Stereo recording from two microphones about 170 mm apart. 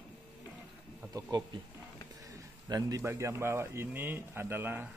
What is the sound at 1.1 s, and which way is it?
A man's voice, 20° right (ahead or behind).